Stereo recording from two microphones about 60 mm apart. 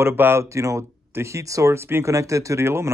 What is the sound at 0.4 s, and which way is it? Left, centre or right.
Speech, right.